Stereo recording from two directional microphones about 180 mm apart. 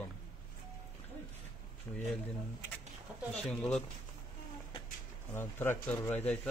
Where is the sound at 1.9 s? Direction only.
5° left (ahead or behind).